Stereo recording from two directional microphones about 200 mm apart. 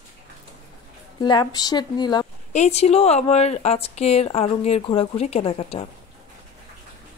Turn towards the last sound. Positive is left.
turn(degrees=30)  # may be behind; listen again after turning